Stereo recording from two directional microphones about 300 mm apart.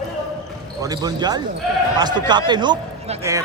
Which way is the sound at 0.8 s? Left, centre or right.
Centre.